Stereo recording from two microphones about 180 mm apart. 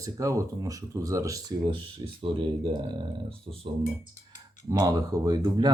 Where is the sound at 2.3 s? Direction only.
35° right (ahead or behind).